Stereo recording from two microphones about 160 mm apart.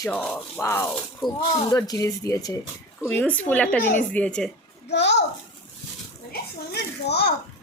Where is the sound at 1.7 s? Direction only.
20° left (ahead or behind).